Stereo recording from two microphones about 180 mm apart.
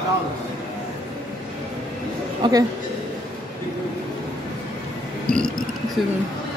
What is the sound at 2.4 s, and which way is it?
Speech, 25° right (ahead or behind).